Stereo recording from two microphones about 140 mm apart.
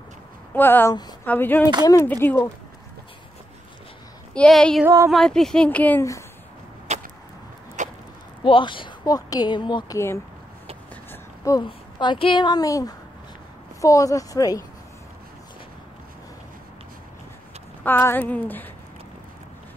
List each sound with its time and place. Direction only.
0.6 s speech: 15° left (ahead or behind)
4.3 s speech: 5° left (ahead or behind)
4.8 s a woman's voice: 20° right (ahead or behind)
5.1 s speech: 5° left (ahead or behind)
6.9 s vehicle: 50° right (ahead or behind)
7.8 s a sound: 60° right (ahead or behind)
8.5 s a woman's voice: 35° left (ahead or behind)
9.9 s a woman's voice: 20° left (ahead or behind)
11.1 s a sound: 20° left (ahead or behind)
11.6 s a woman's voice: 35° left (ahead or behind)
17.8 s speech: 15° left (ahead or behind)